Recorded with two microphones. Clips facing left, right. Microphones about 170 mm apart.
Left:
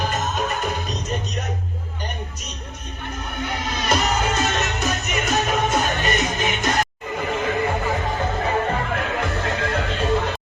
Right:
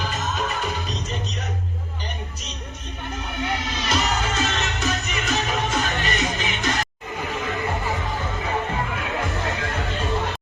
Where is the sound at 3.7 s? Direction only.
50° left (ahead or behind).